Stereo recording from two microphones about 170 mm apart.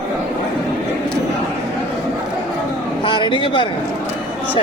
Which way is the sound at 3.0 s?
25° left (ahead or behind).